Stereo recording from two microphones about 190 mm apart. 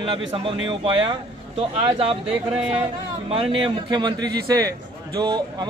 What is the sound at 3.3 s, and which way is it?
Speech, 30° right (ahead or behind).